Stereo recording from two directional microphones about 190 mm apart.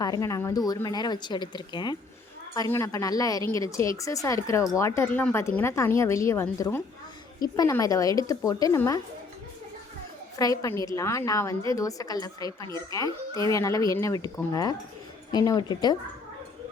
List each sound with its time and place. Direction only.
0.0 s a woman's voice: 20° left (ahead or behind)
10.3 s a woman's voice: 20° left (ahead or behind)